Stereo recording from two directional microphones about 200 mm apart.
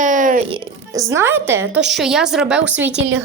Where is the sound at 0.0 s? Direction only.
40° right (ahead or behind).